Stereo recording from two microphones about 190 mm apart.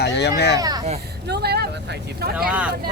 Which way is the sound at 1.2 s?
60° right (ahead or behind).